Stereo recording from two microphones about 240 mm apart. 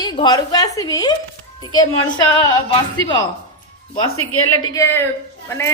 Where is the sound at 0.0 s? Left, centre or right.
Centre.